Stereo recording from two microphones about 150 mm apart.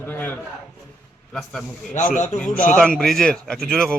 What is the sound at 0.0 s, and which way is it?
A man's voice, 10° left (ahead or behind).